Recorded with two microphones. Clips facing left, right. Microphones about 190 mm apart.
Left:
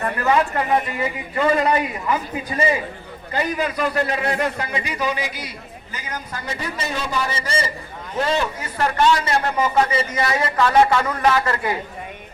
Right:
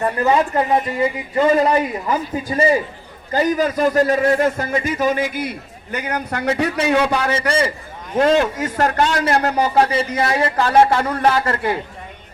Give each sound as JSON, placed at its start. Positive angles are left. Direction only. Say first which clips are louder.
{"t": 0.0, "sound": "a man's voice", "louder": "right 3 dB", "side_deg": -30}
{"t": 8.1, "sound": "a man's voice", "louder": "right 7 dB", "side_deg": -50}